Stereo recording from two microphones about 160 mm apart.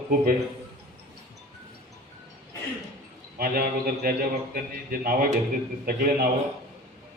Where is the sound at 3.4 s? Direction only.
70° right (ahead or behind).